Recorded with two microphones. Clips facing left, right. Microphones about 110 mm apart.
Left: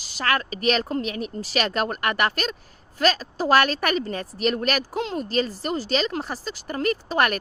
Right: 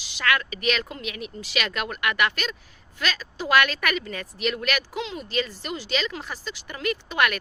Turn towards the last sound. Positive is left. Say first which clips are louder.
# left 2 dB
turn(degrees=40)  # may be behind; listen again after turning